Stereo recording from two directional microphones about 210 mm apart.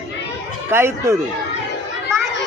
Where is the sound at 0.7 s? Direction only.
10° right (ahead or behind).